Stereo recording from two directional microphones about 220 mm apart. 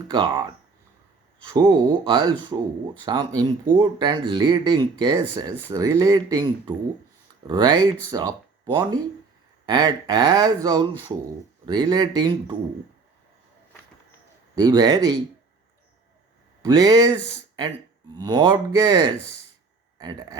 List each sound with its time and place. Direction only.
0.1 s speech: 20° right (ahead or behind)
1.5 s speech: 15° right (ahead or behind)
14.5 s speech: 20° right (ahead or behind)
16.6 s speech: 20° right (ahead or behind)
18.2 s speech: 20° right (ahead or behind)